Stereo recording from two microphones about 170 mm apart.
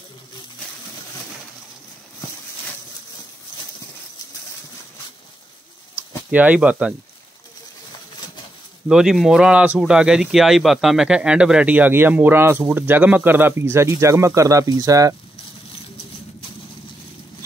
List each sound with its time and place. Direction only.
3.5 s a sound: 25° left (ahead or behind)
5.9 s speech: 10° right (ahead or behind)
8.8 s speech: 5° right (ahead or behind); by 15.1 s 20° right (ahead or behind)